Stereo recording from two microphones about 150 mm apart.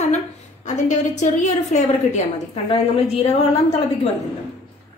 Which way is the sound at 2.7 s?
40° left (ahead or behind).